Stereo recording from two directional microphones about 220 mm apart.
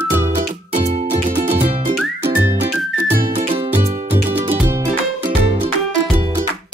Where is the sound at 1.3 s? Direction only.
40° right (ahead or behind).